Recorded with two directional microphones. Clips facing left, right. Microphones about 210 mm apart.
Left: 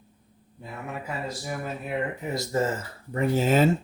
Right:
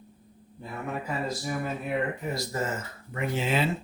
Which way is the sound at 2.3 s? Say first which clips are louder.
Left 5 dB; 25° left (ahead or behind).